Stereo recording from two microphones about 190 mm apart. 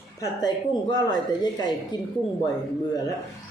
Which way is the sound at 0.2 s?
20° left (ahead or behind).